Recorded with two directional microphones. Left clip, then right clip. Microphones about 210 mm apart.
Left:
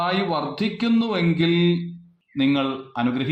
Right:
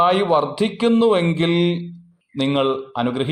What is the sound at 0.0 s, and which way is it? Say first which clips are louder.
A man's voice: right 7 dB; 40° right (ahead or behind).